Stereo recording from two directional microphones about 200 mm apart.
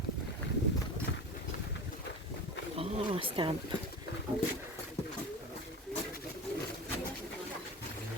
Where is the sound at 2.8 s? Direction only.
25° right (ahead or behind).